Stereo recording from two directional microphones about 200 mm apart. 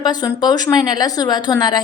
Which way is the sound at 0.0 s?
20° left (ahead or behind).